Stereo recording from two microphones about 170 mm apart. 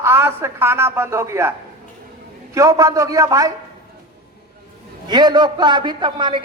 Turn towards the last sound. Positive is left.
turn(degrees=-30)  # may be behind; listen again after turning